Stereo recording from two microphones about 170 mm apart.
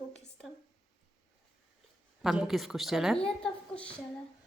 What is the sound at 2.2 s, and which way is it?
Speech, 5° right (ahead or behind).